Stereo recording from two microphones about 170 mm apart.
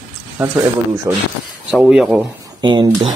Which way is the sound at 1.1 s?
15° right (ahead or behind).